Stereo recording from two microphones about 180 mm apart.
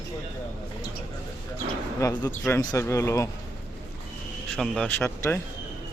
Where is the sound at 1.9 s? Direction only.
15° left (ahead or behind).